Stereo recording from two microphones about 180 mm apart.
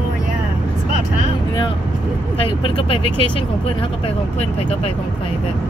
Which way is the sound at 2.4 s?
30° left (ahead or behind).